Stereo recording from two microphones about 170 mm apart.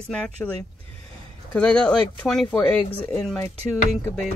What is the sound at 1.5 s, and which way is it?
Speech, 5° left (ahead or behind).